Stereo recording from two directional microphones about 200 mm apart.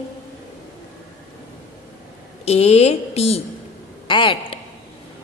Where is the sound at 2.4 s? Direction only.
30° left (ahead or behind).